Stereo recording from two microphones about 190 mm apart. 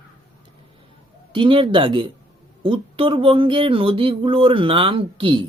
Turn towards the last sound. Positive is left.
turn(degrees=-25)  # may be behind; listen again after turning